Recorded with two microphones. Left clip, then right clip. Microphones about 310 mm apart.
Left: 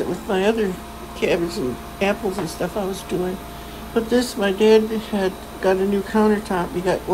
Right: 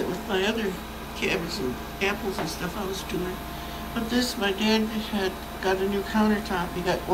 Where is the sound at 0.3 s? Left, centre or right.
Centre.